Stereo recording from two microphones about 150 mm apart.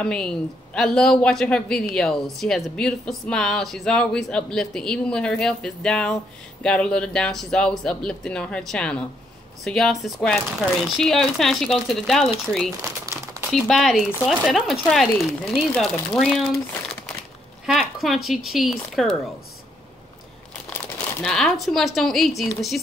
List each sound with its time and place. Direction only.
0.0 s a man's voice: 5° left (ahead or behind)
13.0 s crumpling: 20° right (ahead or behind)
13.5 s a man's voice: centre (ahead or behind)
17.6 s a man's voice: centre (ahead or behind)
21.2 s a man's voice: 5° left (ahead or behind)